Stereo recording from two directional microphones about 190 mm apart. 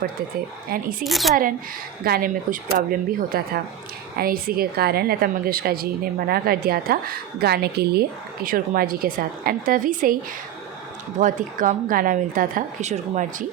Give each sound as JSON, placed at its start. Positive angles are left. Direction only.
{"t": 0.7, "sound": "a woman's voice", "side_deg": -50}
{"t": 1.0, "sound": "speech", "side_deg": 0}
{"t": 2.0, "sound": "a woman's voice", "side_deg": -50}
{"t": 11.2, "sound": "a woman's voice", "side_deg": -45}